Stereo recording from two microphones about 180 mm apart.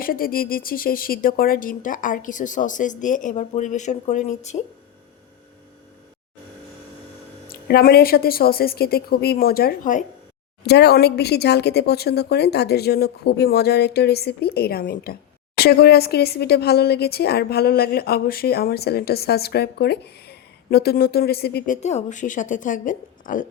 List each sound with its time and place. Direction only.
0.0 s a woman's voice: 55° left (ahead or behind)
7.4 s speech: 55° left (ahead or behind)
10.6 s speech: 65° left (ahead or behind)
21.7 s a woman's voice: 40° left (ahead or behind)